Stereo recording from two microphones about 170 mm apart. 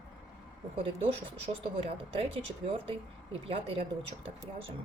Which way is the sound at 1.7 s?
35° right (ahead or behind).